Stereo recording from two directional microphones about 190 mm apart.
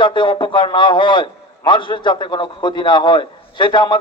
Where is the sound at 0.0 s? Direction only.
25° left (ahead or behind).